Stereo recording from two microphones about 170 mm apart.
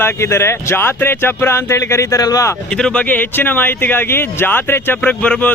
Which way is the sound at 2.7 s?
5° left (ahead or behind).